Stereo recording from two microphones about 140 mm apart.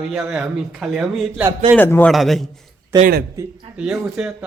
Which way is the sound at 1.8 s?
15° left (ahead or behind).